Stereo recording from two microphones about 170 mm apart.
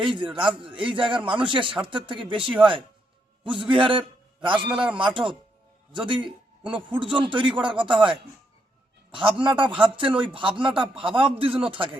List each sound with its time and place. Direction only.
0.0 s a man's voice: 30° right (ahead or behind)
4.7 s speech: 5° right (ahead or behind)
4.9 s a man's voice: 30° right (ahead or behind)